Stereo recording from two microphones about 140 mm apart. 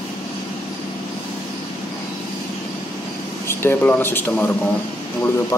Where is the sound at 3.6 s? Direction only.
15° left (ahead or behind).